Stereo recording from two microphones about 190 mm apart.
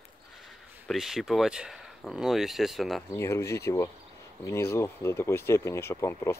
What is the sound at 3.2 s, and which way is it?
Speech, 15° left (ahead or behind).